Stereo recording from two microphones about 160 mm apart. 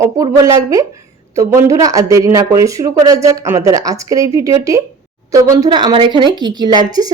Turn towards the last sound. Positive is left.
turn(degrees=-25)  # may be behind; listen again after turning